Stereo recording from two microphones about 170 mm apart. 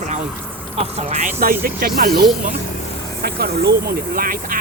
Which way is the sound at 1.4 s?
60° right (ahead or behind).